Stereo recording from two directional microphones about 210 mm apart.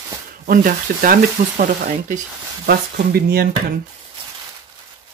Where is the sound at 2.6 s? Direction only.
45° right (ahead or behind).